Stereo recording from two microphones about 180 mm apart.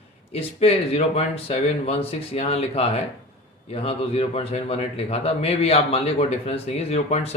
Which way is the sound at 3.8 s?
30° left (ahead or behind).